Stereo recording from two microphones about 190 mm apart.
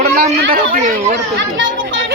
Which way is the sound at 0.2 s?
50° right (ahead or behind).